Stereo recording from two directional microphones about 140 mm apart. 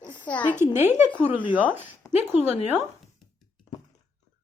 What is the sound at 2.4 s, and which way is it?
Speech, 50° left (ahead or behind).